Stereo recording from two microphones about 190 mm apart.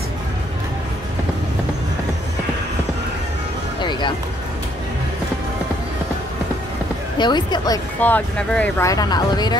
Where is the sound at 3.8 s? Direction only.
25° left (ahead or behind).